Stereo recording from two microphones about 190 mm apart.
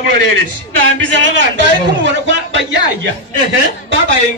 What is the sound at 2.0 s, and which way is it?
A man's voice, 75° right (ahead or behind).